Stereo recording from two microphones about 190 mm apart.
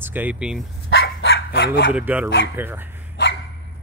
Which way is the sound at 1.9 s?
10° right (ahead or behind).